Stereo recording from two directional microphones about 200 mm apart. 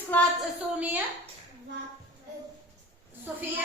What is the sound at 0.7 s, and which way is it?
Speech, 5° right (ahead or behind).